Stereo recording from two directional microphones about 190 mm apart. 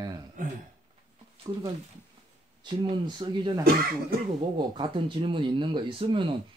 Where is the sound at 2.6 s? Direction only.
25° right (ahead or behind).